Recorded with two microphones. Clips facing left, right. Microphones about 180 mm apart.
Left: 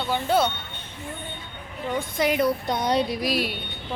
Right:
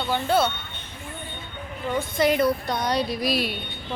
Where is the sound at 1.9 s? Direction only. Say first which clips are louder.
Right 2 dB; 15° left (ahead or behind).